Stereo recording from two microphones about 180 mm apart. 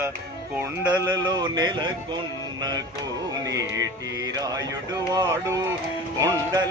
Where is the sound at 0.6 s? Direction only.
20° right (ahead or behind).